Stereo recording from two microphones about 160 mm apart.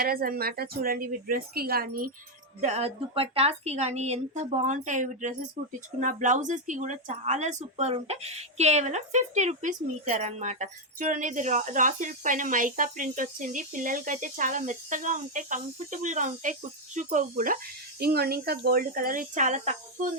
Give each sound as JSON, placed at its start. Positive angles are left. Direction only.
{"t": 0.0, "sound": "a woman's voice", "side_deg": -65}
{"t": 2.6, "sound": "speech", "side_deg": -45}